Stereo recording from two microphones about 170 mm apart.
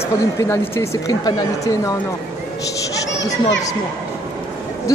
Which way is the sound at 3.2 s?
90° left.